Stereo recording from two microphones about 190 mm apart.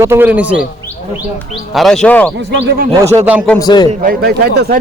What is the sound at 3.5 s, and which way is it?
Speech, 20° left (ahead or behind).